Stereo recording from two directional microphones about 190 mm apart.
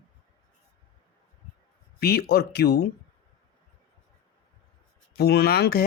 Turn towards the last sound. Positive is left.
turn(degrees=55)  # may be behind; listen again after turning